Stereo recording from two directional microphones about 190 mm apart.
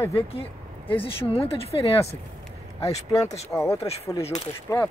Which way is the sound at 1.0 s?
30° left (ahead or behind).